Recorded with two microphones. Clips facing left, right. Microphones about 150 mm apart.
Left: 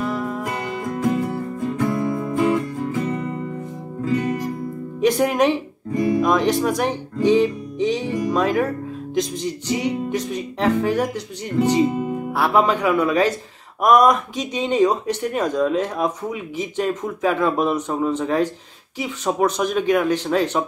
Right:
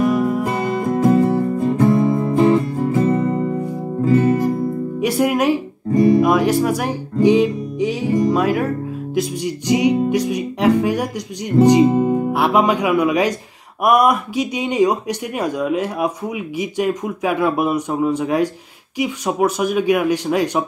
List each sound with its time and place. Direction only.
0.0 s music: 15° right (ahead or behind)
0.7 s music: 35° right (ahead or behind)
5.0 s speech: 5° right (ahead or behind)
11.9 s music: 35° right (ahead or behind)
12.3 s speech: 15° right (ahead or behind)